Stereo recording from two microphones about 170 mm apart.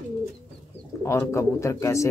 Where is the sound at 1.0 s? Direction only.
15° left (ahead or behind).